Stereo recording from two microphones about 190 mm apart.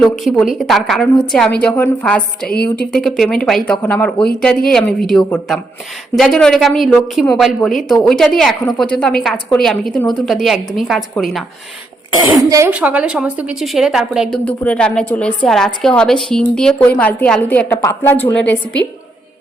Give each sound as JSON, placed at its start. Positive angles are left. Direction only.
{"t": 0.0, "sound": "a woman's voice", "side_deg": 0}
{"t": 2.5, "sound": "speech", "side_deg": 55}
{"t": 2.9, "sound": "a woman's voice", "side_deg": 0}
{"t": 12.4, "sound": "a woman's voice", "side_deg": -15}